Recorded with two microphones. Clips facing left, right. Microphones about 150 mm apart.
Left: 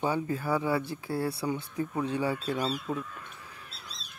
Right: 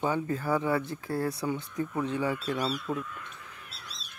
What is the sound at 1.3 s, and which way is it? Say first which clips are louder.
Speech: even; 25° left (ahead or behind).